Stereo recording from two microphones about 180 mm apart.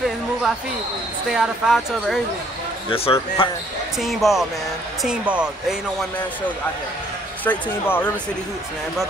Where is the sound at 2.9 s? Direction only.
30° left (ahead or behind).